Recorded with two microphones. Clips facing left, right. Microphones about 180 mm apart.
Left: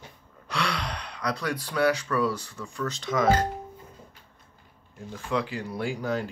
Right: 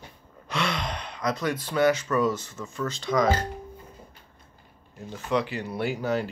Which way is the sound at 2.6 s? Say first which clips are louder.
Right 1 dB; centre (ahead or behind).